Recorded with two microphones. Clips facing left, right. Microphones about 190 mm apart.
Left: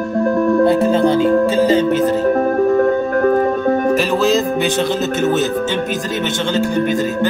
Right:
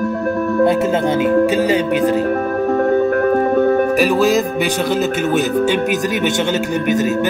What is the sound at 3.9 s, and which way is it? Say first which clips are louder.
A man's voice: right 1 dB; 10° right (ahead or behind).